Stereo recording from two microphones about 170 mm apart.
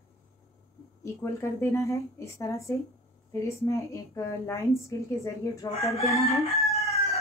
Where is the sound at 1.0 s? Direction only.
15° left (ahead or behind).